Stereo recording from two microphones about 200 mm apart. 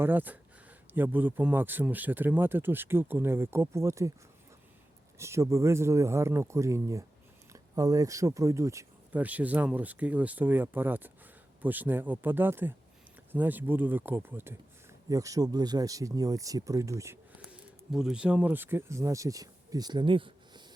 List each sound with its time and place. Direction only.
0.0 s speech: 10° right (ahead or behind)
5.1 s speech: 15° right (ahead or behind)
17.9 s speech: 5° right (ahead or behind); by 20.6 s 25° right (ahead or behind)